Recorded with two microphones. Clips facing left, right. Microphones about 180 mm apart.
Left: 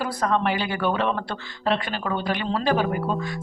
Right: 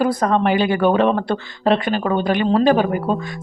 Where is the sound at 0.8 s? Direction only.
55° right (ahead or behind).